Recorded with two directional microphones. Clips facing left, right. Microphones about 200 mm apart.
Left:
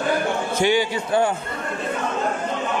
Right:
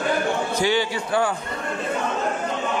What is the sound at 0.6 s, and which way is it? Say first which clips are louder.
Speech: left 5 dB; 20° left (ahead or behind).